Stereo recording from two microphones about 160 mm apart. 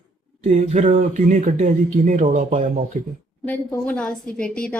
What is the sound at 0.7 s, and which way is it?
Speech, 50° right (ahead or behind).